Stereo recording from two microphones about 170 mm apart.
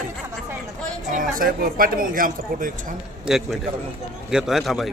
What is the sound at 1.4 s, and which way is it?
Speech, 55° right (ahead or behind).